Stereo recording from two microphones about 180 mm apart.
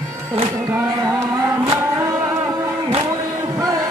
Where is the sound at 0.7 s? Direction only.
20° right (ahead or behind).